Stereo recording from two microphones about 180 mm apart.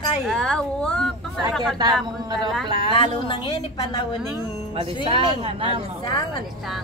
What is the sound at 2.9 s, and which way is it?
A woman's voice, 30° left (ahead or behind).